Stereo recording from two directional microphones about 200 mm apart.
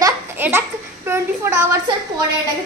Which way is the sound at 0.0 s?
10° right (ahead or behind).